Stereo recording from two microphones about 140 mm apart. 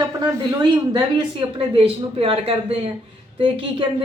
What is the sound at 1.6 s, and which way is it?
A man's voice, 40° right (ahead or behind).